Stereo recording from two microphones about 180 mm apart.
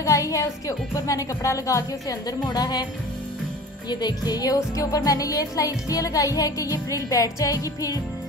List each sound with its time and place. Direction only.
0.0 s speech: 15° left (ahead or behind)
3.9 s speech: 25° left (ahead or behind)